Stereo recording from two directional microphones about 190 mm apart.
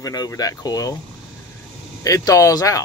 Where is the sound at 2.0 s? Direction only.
20° left (ahead or behind).